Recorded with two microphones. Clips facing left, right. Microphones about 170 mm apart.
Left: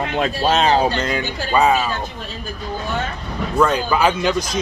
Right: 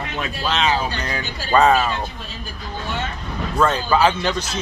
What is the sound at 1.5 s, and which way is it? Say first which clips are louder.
Speech: right 1 dB; 10° left (ahead or behind).